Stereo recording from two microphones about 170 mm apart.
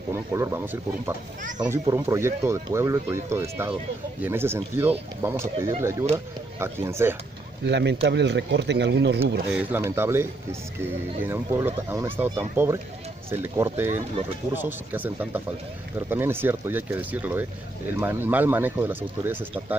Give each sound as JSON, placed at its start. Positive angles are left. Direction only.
{"t": 0.1, "sound": "speech", "side_deg": -15}
{"t": 7.6, "sound": "speech", "side_deg": -90}
{"t": 9.5, "sound": "speech", "side_deg": -10}
{"t": 11.2, "sound": "speech", "side_deg": -15}